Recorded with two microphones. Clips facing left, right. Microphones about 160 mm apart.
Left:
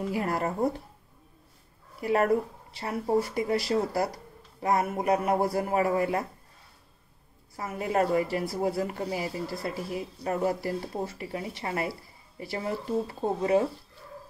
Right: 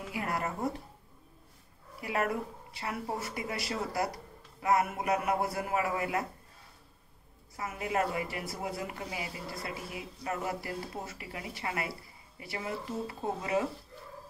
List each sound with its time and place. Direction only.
0.1 s speech: 35° left (ahead or behind)
2.0 s speech: 40° left (ahead or behind)
7.5 s speech: 35° left (ahead or behind)